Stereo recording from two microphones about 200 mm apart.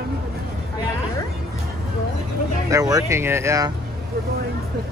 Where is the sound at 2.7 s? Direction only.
15° right (ahead or behind).